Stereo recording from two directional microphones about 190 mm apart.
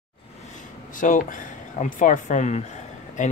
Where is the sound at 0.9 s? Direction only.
45° left (ahead or behind).